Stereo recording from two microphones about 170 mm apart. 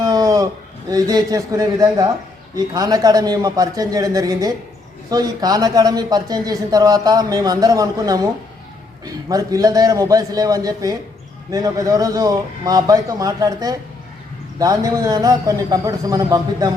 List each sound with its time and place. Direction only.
0.0 s a sound: 20° right (ahead or behind)
0.9 s a man's voice: 20° right (ahead or behind)
9.3 s a man's voice: 20° right (ahead or behind)